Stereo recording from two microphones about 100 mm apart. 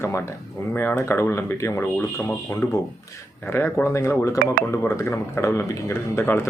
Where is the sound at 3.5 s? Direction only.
25° left (ahead or behind).